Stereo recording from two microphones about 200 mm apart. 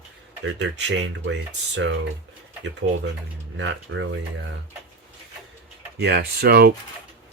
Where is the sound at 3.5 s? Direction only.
70° right (ahead or behind).